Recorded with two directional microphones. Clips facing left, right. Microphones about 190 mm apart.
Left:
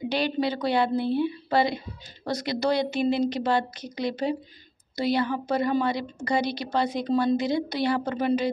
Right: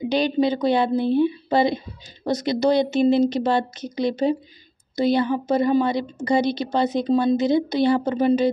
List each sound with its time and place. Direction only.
0.1 s a woman's voice: 20° right (ahead or behind)